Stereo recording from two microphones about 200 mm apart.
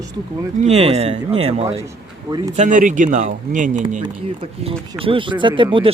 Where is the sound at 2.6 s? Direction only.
40° right (ahead or behind).